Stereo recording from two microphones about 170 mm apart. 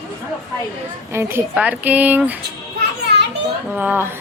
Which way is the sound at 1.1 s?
15° right (ahead or behind).